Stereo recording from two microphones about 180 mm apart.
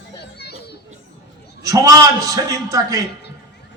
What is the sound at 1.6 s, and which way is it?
A man's voice, 20° right (ahead or behind).